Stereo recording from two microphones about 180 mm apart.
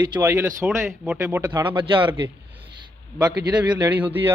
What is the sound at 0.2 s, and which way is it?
Speech, 15° right (ahead or behind).